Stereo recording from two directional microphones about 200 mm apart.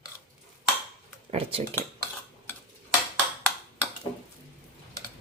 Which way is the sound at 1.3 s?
30° right (ahead or behind).